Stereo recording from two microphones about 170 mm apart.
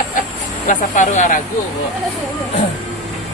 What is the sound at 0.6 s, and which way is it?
Speech, 45° left (ahead or behind).